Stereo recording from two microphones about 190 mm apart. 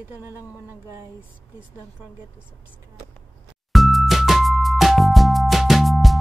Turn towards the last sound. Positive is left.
turn(degrees=0)  # may be behind; listen again after turning